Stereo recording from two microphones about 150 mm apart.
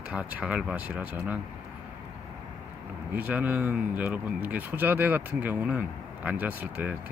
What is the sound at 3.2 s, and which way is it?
Speech, 10° right (ahead or behind).